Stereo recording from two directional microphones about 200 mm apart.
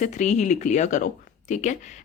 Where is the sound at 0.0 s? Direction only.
35° left (ahead or behind).